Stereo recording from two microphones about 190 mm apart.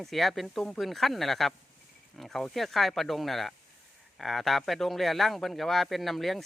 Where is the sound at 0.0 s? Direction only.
Centre (ahead or behind).